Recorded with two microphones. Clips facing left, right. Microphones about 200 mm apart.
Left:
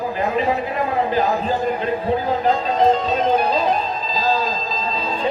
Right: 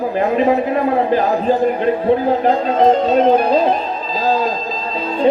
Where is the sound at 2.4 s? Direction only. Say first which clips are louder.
Right 4 dB; 55° right (ahead or behind).